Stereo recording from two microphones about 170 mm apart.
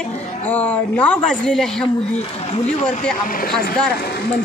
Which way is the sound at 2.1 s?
40° left (ahead or behind).